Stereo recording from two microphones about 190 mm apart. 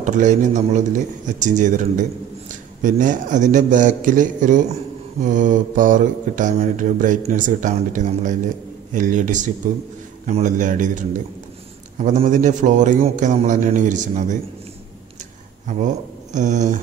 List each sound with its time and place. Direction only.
0.0 s speech: 40° right (ahead or behind)
5.2 s mantra: 40° right (ahead or behind)
8.9 s speech: 45° right (ahead or behind)
15.6 s speech: 40° right (ahead or behind)